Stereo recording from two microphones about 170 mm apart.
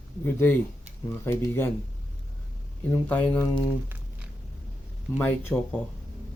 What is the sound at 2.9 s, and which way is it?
Speech, 10° left (ahead or behind).